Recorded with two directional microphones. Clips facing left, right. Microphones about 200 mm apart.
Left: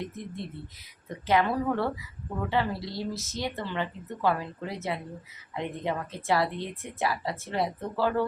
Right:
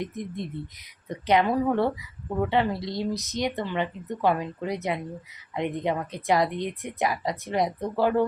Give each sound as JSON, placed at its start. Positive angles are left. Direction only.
{"t": 0.0, "sound": "a woman's voice", "side_deg": -15}